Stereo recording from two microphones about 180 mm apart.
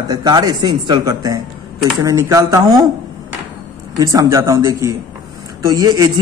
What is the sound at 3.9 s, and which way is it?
A man's voice, 20° right (ahead or behind).